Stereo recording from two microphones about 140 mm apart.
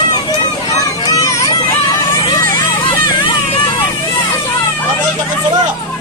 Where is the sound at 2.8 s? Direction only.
35° left (ahead or behind).